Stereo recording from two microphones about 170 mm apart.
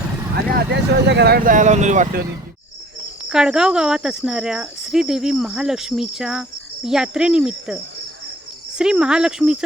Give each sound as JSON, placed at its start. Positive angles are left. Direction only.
{"t": 0.5, "sound": "speech", "side_deg": -85}
{"t": 3.2, "sound": "speech", "side_deg": -5}
{"t": 8.8, "sound": "speech", "side_deg": -5}